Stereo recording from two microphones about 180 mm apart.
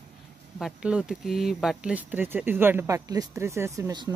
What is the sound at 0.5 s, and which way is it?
Speech, 5° right (ahead or behind).